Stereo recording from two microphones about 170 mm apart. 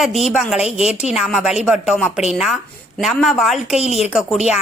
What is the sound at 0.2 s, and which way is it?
Speech, centre (ahead or behind).